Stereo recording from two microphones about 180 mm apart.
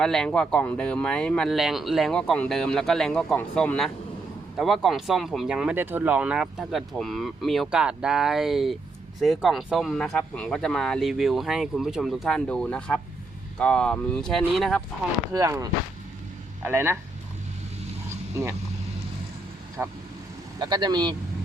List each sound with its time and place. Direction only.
0.0 s speech: 5° left (ahead or behind)
15.3 s speech: 20° right (ahead or behind)
19.8 s speech: 10° right (ahead or behind)
20.6 s speech: 25° right (ahead or behind)